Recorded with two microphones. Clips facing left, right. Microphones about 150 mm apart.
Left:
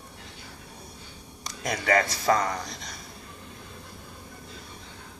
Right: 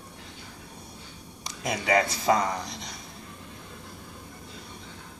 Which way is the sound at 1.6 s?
20° right (ahead or behind).